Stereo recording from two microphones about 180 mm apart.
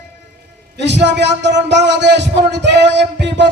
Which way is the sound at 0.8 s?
75° right (ahead or behind).